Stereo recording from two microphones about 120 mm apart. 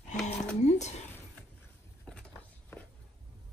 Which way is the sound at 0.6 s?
70° left (ahead or behind).